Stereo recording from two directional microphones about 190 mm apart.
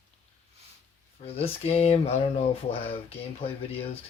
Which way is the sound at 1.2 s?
30° left (ahead or behind).